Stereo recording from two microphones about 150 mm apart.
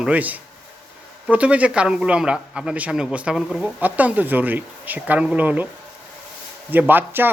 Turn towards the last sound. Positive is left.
turn(degrees=-15)  # may be behind; listen again after turning